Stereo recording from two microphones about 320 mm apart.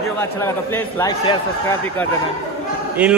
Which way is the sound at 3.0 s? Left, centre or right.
Centre.